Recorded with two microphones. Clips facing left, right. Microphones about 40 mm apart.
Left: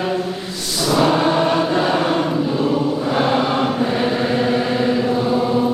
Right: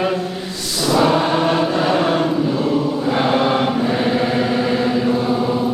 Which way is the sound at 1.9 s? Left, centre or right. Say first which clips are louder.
Right 1 dB; centre.